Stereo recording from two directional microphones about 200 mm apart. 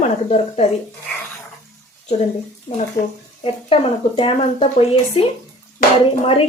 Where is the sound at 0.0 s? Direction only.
35° left (ahead or behind).